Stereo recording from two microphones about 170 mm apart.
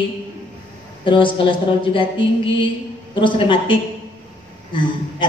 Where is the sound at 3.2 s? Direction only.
30° left (ahead or behind).